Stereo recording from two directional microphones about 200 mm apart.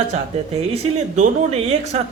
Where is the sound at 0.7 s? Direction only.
35° right (ahead or behind).